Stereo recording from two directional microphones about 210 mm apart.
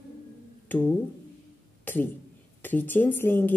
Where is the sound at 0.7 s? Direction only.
5° left (ahead or behind).